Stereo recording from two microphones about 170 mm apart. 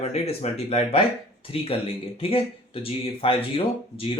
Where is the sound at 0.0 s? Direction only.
40° left (ahead or behind).